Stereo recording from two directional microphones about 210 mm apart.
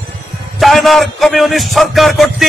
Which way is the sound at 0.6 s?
Centre (ahead or behind).